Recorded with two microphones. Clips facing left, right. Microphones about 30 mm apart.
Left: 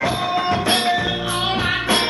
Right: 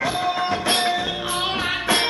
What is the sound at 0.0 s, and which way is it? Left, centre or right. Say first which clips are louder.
Music: left 2 dB; centre.